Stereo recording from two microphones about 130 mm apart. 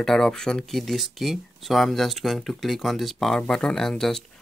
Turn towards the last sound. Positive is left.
turn(degrees=5)  # may be behind; listen again after turning